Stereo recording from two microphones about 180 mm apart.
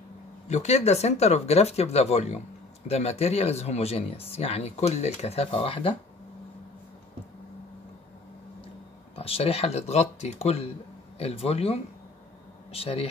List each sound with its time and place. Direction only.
0.5 s speech: 40° left (ahead or behind)
9.1 s speech: 30° left (ahead or behind)